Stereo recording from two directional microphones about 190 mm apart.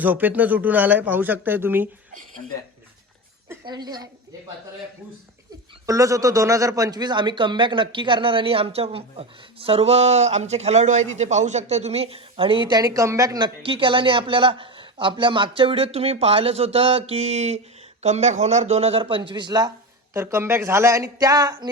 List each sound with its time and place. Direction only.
0.0 s speech: 10° right (ahead or behind)
3.5 s speech: 20° right (ahead or behind)
5.8 s a man's voice: 15° right (ahead or behind)